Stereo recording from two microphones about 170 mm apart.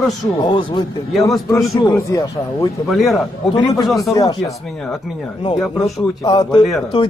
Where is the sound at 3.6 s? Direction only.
25° left (ahead or behind).